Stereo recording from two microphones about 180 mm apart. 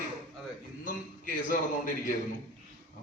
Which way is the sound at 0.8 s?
50° left (ahead or behind).